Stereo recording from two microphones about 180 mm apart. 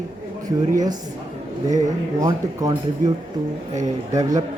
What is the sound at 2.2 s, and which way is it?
Speech, 20° right (ahead or behind).